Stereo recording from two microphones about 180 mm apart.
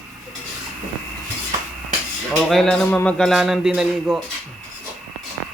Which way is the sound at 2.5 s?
5° left (ahead or behind).